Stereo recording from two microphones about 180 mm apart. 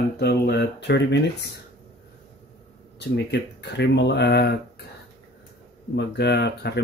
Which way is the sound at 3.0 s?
70° left (ahead or behind).